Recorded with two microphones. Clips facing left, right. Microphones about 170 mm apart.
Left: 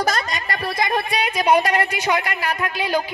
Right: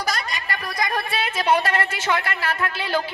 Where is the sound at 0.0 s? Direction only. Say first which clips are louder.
Left 5 dB; 50° left (ahead or behind).